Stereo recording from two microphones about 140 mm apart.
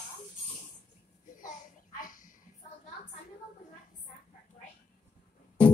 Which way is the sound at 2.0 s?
80° left.